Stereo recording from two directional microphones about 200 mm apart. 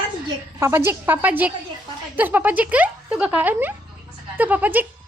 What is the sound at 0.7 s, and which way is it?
Speech, 10° right (ahead or behind).